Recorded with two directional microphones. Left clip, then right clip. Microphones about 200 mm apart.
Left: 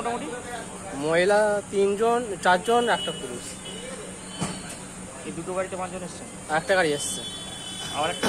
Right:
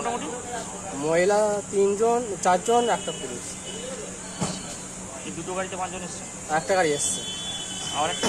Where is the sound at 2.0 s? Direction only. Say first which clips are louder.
Even; 25° left (ahead or behind).